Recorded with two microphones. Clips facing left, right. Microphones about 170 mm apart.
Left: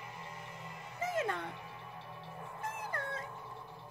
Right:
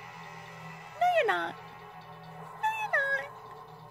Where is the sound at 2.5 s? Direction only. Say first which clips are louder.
Right 9 dB; 70° right (ahead or behind).